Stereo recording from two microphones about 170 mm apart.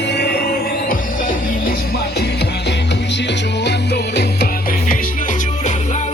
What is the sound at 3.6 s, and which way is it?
Music, 75° left (ahead or behind).